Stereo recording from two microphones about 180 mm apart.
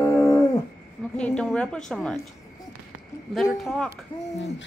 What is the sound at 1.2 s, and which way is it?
A woman's voice, 5° left (ahead or behind).